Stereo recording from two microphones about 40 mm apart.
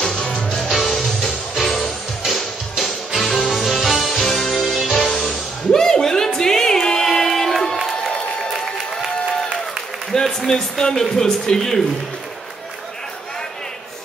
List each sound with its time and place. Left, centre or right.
0.0 s music: centre
0.7 s music: centre
3.3 s music: centre
5.1 s music: centre
10.1 s speech: centre